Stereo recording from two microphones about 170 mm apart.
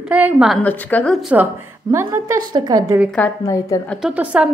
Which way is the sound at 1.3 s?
15° right (ahead or behind).